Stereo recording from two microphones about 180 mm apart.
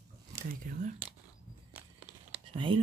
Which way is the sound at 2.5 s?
30° right (ahead or behind).